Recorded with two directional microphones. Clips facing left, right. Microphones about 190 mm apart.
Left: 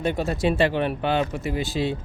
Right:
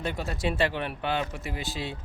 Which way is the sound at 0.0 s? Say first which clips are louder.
Left 7 dB; 25° left (ahead or behind).